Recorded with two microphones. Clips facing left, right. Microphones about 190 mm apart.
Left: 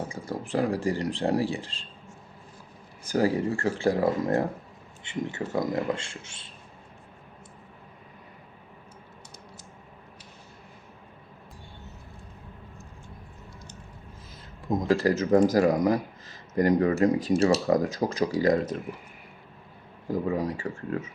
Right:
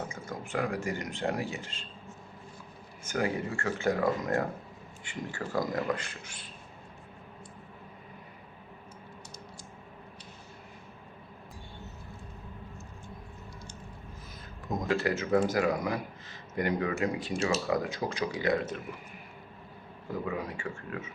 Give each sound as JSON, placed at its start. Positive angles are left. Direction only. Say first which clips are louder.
{"t": 0.1, "sound": "speech", "louder": "left 6 dB", "side_deg": 35}
{"t": 3.0, "sound": "speech", "louder": "left 7 dB", "side_deg": 35}
{"t": 14.7, "sound": "speech", "louder": "left 6 dB", "side_deg": 35}
{"t": 20.1, "sound": "speech", "louder": "left 7 dB", "side_deg": 35}